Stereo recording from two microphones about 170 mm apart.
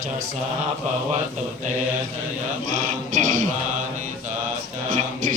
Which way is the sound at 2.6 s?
50° right (ahead or behind).